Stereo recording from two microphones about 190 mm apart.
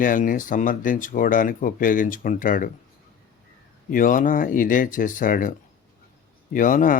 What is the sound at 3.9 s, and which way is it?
Speech, 45° left (ahead or behind).